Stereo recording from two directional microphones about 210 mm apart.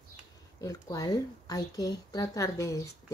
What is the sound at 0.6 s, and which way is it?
A woman's voice, 15° left (ahead or behind).